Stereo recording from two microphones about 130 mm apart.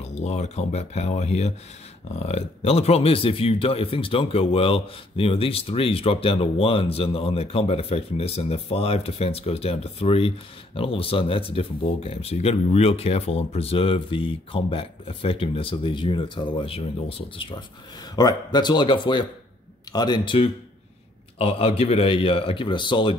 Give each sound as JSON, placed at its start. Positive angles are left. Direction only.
{"t": 0.0, "sound": "speech", "side_deg": 60}
{"t": 21.4, "sound": "speech", "side_deg": 45}